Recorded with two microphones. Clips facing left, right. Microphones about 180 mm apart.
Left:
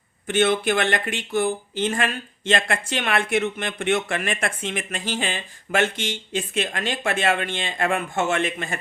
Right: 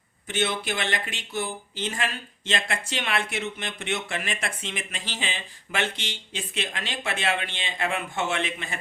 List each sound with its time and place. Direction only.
0.3 s speech: 50° left (ahead or behind)